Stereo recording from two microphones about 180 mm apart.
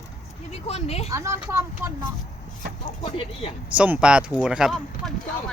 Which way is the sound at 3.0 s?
30° left (ahead or behind).